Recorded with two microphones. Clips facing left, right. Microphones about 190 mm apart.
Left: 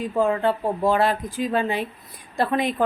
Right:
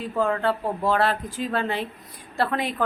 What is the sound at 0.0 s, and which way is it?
Speech, 15° left (ahead or behind).